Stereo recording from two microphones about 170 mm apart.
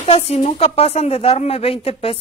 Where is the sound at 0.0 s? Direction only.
35° left (ahead or behind).